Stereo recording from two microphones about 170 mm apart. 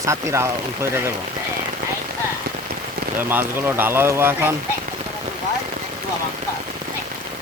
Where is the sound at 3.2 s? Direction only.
10° right (ahead or behind).